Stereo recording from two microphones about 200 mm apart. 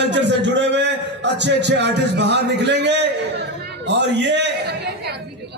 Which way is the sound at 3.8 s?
60° right (ahead or behind).